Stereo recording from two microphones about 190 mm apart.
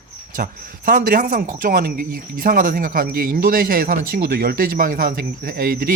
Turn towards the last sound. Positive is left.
turn(degrees=-50)  # may be behind; listen again after turning